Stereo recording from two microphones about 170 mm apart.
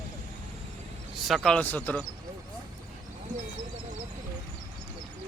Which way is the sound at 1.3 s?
5° left (ahead or behind).